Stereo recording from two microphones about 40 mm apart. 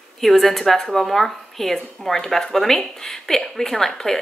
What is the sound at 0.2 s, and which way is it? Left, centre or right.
A woman's voice, centre.